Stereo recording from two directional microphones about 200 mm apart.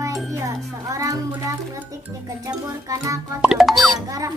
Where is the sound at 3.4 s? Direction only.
Centre (ahead or behind).